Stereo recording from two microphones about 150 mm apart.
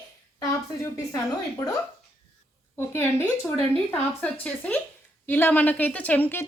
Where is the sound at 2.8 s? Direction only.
15° left (ahead or behind).